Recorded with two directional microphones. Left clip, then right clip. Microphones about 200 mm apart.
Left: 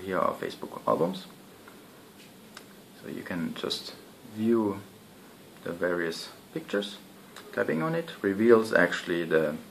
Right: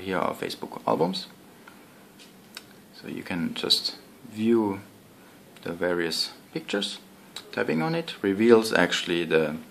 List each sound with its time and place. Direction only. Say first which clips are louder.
0.1 s speech: even; 45° right (ahead or behind)
3.3 s speech: right 8 dB; 45° right (ahead or behind)